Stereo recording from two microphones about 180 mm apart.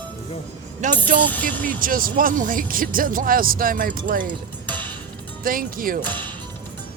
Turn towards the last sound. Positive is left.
turn(degrees=10)  # may be behind; listen again after turning